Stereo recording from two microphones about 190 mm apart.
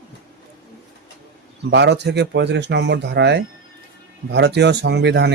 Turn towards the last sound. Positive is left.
turn(degrees=-65)  # may be behind; listen again after turning